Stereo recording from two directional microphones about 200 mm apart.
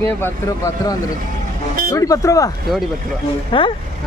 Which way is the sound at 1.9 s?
15° left (ahead or behind).